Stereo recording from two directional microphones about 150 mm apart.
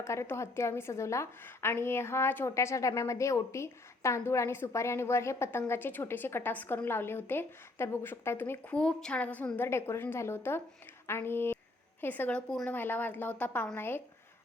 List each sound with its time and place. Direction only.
0.0 s a woman's voice: 20° left (ahead or behind)